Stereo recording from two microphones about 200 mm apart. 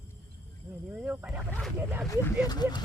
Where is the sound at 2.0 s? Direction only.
15° left (ahead or behind).